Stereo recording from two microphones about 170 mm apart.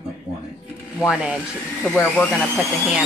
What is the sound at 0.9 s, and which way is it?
Speech, 5° right (ahead or behind).